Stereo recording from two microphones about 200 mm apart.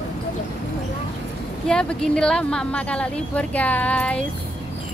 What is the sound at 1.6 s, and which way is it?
Speech, 5° left (ahead or behind).